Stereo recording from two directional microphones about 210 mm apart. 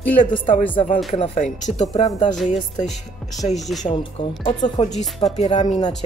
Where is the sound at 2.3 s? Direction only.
Centre (ahead or behind).